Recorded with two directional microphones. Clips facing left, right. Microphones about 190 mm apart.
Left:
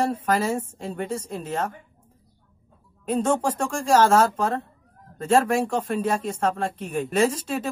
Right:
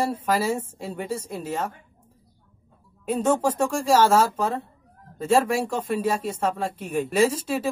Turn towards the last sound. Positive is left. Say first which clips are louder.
# right 1 dB
turn(degrees=-10)  # may be behind; listen again after turning